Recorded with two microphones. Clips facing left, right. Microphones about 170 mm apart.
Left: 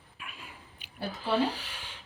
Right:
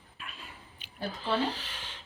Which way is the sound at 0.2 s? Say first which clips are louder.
Even; 10° left (ahead or behind).